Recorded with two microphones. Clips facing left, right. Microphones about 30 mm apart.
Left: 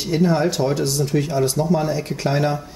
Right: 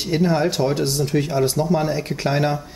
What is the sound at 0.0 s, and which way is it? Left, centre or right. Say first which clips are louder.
Speech: left 1 dB; centre.